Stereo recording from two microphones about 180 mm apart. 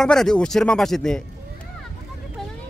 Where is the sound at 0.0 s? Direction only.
5° left (ahead or behind).